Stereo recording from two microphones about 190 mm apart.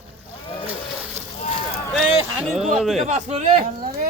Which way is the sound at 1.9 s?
Centre (ahead or behind).